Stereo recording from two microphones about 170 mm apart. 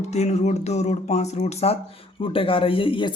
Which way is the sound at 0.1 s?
40° left (ahead or behind).